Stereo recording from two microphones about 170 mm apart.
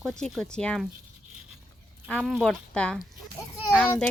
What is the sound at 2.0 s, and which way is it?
Speech, centre (ahead or behind).